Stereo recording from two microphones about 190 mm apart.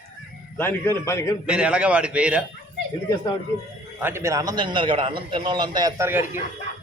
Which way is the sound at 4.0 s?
10° right (ahead or behind).